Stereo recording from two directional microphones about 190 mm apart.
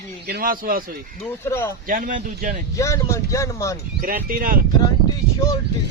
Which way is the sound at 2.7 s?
15° left (ahead or behind).